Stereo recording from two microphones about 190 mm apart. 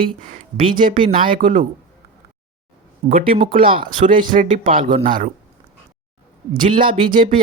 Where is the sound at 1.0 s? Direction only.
25° right (ahead or behind).